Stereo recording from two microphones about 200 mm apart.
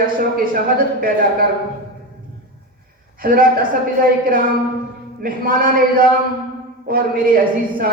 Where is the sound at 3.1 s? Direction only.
45° right (ahead or behind).